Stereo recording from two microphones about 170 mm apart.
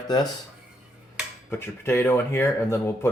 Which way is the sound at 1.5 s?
15° left (ahead or behind).